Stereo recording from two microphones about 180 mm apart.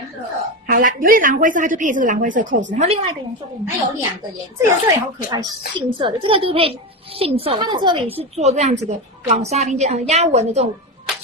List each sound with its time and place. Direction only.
0.7 s a woman's voice: 50° right (ahead or behind)
4.6 s a woman's voice: 15° right (ahead or behind); by 10.7 s 35° right (ahead or behind)